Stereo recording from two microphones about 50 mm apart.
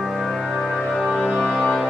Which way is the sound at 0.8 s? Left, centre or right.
Centre.